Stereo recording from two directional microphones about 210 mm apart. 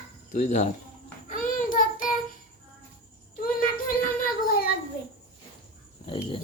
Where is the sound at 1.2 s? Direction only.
40° left (ahead or behind).